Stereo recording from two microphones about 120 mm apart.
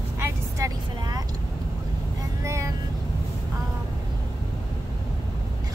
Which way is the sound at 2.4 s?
25° right (ahead or behind).